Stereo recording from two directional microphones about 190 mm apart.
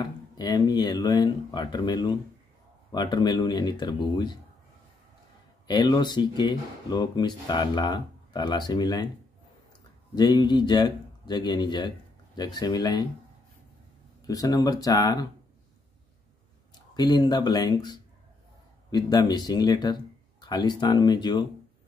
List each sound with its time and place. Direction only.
0.0 s speech: 20° left (ahead or behind)
5.7 s speech: 20° left (ahead or behind)
10.1 s speech: 20° left (ahead or behind)
14.2 s speech: 20° left (ahead or behind)
16.9 s speech: 20° left (ahead or behind)